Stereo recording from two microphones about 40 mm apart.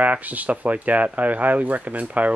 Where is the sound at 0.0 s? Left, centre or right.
Right.